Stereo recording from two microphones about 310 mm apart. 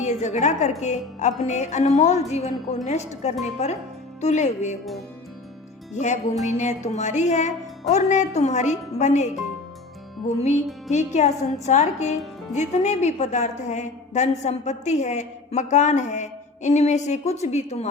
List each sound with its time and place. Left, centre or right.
0.0 s a woman's voice: left
5.9 s a woman's voice: left